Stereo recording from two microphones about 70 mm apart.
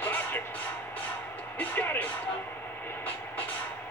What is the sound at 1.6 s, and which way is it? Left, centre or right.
Music, left.